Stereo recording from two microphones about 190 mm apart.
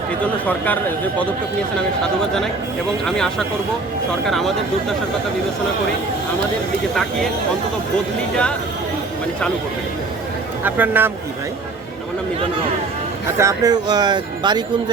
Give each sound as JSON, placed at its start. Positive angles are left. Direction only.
{"t": 0.4, "sound": "speech", "side_deg": 10}
{"t": 3.1, "sound": "speech", "side_deg": 5}
{"t": 10.6, "sound": "speech", "side_deg": -10}
{"t": 13.4, "sound": "speech", "side_deg": -20}